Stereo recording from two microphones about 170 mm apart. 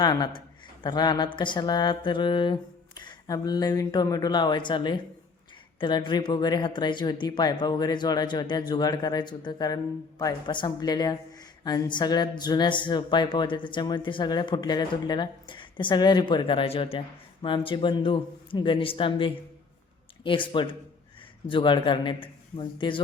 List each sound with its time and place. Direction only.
0.0 s speech: 25° left (ahead or behind)